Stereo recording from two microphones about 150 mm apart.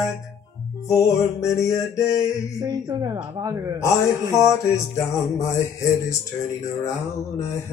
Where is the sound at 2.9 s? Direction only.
25° right (ahead or behind).